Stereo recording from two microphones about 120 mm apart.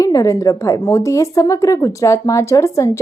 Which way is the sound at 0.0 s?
30° left (ahead or behind).